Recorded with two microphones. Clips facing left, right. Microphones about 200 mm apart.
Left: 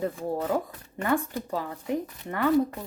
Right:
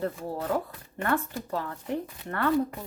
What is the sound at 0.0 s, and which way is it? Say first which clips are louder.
A woman's voice: left 3 dB; 10° left (ahead or behind).